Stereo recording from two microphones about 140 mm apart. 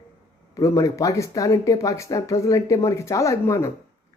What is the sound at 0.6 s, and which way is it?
Speech, 20° left (ahead or behind).